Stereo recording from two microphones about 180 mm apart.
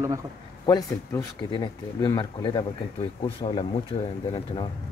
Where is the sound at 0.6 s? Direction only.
20° left (ahead or behind).